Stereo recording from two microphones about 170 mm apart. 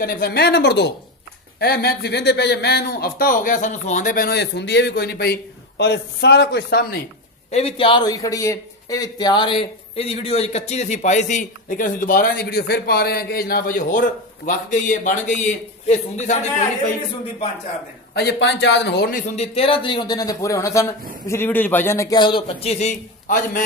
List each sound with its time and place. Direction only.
0.0 s speech: 65° left (ahead or behind)
1.6 s speech: 65° left (ahead or behind)
7.5 s speech: 35° left (ahead or behind)
18.1 s a man's voice: 85° left; by 19.2 s 65° left (ahead or behind)
19.3 s a man's voice: 35° left (ahead or behind)